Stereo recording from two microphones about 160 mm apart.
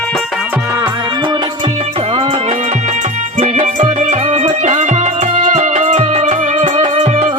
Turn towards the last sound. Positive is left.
turn(degrees=-45)  # may be behind; listen again after turning